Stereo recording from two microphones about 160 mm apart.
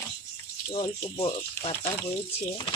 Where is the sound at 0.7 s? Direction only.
35° left (ahead or behind).